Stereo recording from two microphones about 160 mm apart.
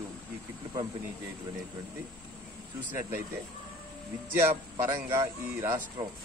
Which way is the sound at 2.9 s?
15° right (ahead or behind).